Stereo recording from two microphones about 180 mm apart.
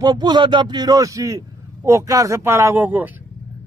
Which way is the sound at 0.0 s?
25° right (ahead or behind).